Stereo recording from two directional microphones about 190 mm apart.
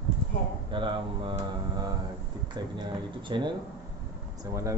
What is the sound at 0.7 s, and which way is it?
Mantra, 25° right (ahead or behind).